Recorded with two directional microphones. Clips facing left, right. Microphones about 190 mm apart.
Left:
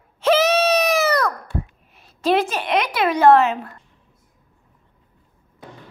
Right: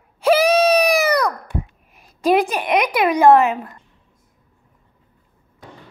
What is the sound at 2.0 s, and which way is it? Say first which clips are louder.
A woman's voice: right 2 dB; 15° right (ahead or behind).